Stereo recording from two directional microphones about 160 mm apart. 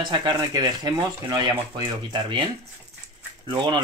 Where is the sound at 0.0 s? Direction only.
30° right (ahead or behind).